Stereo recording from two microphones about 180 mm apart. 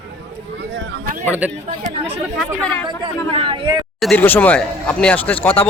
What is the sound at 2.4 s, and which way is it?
Speech, 5° left (ahead or behind).